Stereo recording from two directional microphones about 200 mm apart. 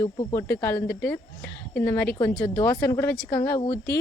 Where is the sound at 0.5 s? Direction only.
10° left (ahead or behind).